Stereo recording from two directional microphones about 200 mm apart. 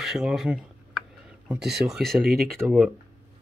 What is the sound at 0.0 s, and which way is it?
Speech, centre (ahead or behind).